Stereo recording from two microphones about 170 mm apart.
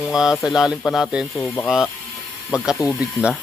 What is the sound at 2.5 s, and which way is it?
Speech, 5° right (ahead or behind).